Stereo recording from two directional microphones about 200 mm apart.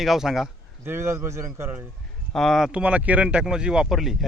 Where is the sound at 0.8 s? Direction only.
10° right (ahead or behind).